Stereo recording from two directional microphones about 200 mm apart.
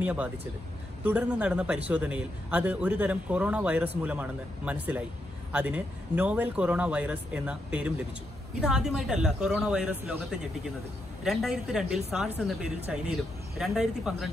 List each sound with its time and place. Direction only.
0.0 s a man's voice: 5° right (ahead or behind)
11.2 s speech: centre (ahead or behind)